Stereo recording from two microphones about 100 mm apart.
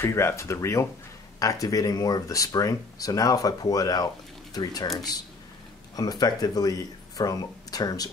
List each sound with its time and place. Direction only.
0.0 s speech: 25° left (ahead or behind)